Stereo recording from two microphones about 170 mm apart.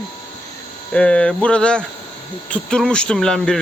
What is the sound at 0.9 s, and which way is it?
Speech, 5° left (ahead or behind).